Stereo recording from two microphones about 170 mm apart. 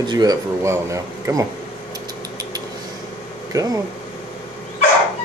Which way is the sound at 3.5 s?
20° right (ahead or behind).